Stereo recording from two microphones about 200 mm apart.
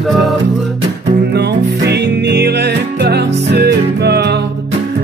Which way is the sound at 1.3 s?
55° right (ahead or behind).